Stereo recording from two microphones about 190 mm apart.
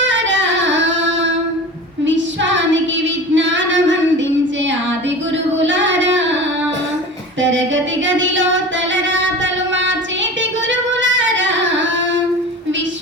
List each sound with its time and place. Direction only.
0.0 s singing: 75° right (ahead or behind)
2.0 s child singing: 75° right (ahead or behind)
3.3 s female singing: 75° right (ahead or behind)
5.5 s child singing: 75° right (ahead or behind)
8.0 s a sound: 80° right
10.7 s singing: 75° right (ahead or behind)